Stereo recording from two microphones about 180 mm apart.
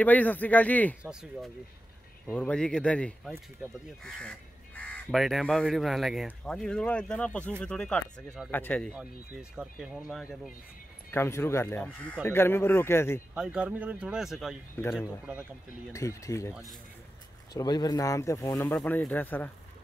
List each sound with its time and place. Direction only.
0.0 s speech: 10° left (ahead or behind)
1.0 s speech: 5° right (ahead or behind)
2.2 s speech: 5° left (ahead or behind)
11.1 s speech: 15° left (ahead or behind)
13.3 s speech: 5° right (ahead or behind)
15.9 s speech: 15° left (ahead or behind)
17.6 s speech: 20° left (ahead or behind)